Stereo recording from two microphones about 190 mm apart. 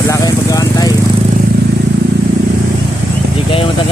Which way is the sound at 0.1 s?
20° left (ahead or behind).